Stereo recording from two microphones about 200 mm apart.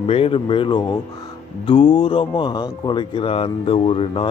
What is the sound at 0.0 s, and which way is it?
Speech, 30° left (ahead or behind).